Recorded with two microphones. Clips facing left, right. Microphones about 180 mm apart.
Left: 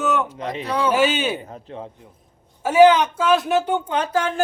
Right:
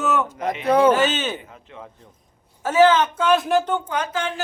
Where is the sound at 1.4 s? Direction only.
35° left (ahead or behind).